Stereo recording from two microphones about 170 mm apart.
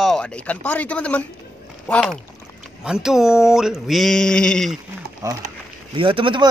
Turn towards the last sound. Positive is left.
turn(degrees=-30)  # may be behind; listen again after turning